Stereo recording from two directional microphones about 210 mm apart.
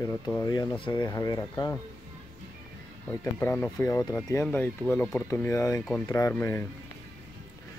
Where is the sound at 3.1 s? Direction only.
10° left (ahead or behind).